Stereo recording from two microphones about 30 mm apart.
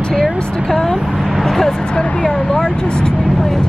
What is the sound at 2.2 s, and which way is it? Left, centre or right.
Speech, left.